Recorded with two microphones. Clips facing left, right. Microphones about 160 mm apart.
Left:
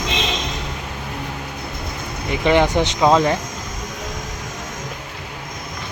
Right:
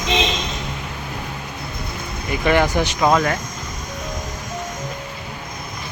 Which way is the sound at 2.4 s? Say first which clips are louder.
Left 2 dB; 20° left (ahead or behind).